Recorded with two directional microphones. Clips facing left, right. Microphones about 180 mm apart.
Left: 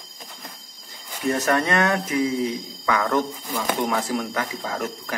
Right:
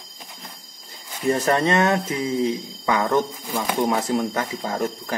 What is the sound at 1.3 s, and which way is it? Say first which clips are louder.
Speech: right 2 dB; 30° right (ahead or behind).